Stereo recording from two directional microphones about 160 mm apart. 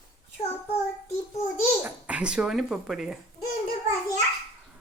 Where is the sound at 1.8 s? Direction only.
5° right (ahead or behind).